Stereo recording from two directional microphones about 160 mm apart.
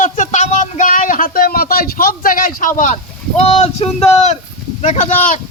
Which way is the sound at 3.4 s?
40° left (ahead or behind).